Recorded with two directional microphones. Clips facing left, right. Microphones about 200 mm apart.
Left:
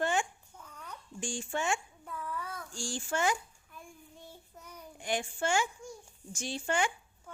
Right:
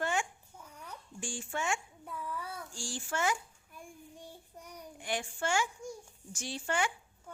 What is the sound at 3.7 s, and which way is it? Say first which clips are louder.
Child singing: right 2 dB; 15° right (ahead or behind).